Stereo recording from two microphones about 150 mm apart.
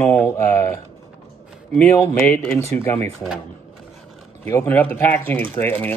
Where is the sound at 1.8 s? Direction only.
10° left (ahead or behind).